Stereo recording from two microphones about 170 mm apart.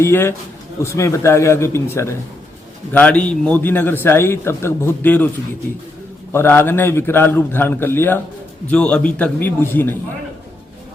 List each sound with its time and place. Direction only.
0.0 s a man's voice: 15° left (ahead or behind)
6.3 s a man's voice: 15° left (ahead or behind)